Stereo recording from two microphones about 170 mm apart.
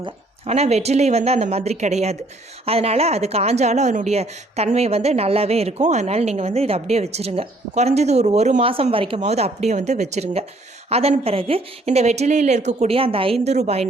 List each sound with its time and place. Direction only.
0.0 s speech: 40° right (ahead or behind)